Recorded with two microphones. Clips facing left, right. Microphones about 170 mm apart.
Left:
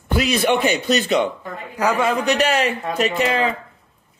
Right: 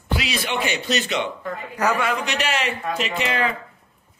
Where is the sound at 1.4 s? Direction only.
10° left (ahead or behind).